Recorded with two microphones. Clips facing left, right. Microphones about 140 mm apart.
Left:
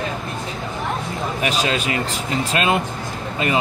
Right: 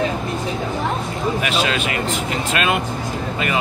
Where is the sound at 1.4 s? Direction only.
35° left (ahead or behind).